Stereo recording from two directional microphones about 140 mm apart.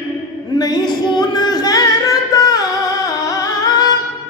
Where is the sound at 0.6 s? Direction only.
30° left (ahead or behind).